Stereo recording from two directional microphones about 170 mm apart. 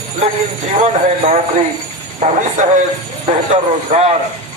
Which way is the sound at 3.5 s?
40° right (ahead or behind).